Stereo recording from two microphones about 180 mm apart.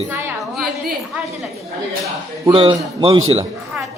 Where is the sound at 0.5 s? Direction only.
Centre (ahead or behind).